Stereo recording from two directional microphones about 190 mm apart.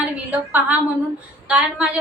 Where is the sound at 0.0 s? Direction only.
10° right (ahead or behind).